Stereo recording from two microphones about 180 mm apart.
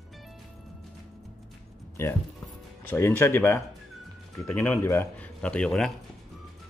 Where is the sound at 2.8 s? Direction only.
10° left (ahead or behind).